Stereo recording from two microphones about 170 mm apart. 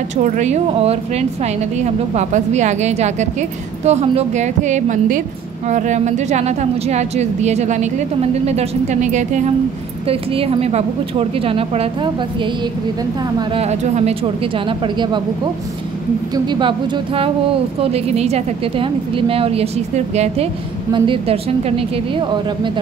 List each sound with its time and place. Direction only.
0.2 s a woman's voice: 45° right (ahead or behind)
10.0 s a woman's voice: 35° right (ahead or behind)
13.5 s a woman's voice: 40° right (ahead or behind)
16.4 s a woman's voice: 25° right (ahead or behind)
20.9 s a woman's voice: 30° right (ahead or behind)